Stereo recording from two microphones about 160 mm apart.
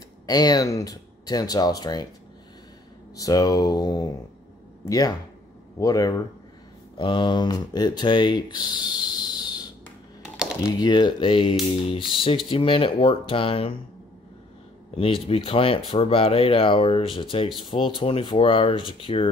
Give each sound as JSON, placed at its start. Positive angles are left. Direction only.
{"t": 0.3, "sound": "speech", "side_deg": 25}
{"t": 3.2, "sound": "speech", "side_deg": 20}
{"t": 10.8, "sound": "speech", "side_deg": 25}
{"t": 15.0, "sound": "speech", "side_deg": 35}